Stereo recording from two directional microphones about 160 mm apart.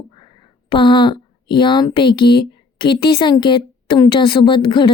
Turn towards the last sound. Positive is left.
turn(degrees=30)  # may be behind; listen again after turning